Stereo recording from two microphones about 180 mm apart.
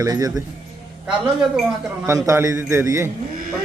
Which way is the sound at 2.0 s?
15° right (ahead or behind).